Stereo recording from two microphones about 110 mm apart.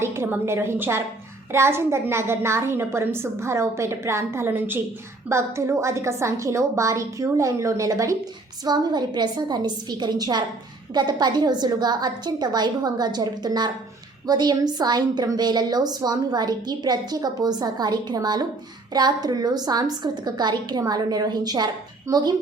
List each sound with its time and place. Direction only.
0.0 s a woman's voice: 25° right (ahead or behind)